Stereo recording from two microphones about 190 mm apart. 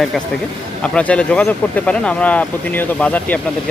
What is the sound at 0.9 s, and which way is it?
Speech, 5° left (ahead or behind).